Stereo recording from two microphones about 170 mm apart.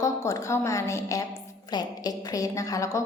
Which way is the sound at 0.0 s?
20° left (ahead or behind).